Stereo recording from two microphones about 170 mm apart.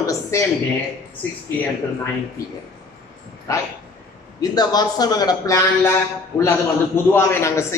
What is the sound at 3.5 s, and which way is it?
A man's voice, 20° left (ahead or behind).